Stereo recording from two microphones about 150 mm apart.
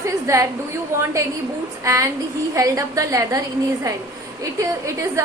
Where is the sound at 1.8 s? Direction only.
20° right (ahead or behind).